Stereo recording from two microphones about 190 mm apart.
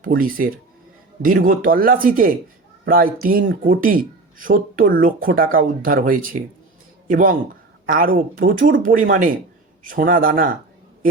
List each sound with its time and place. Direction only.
0.0 s speech: 45° right (ahead or behind)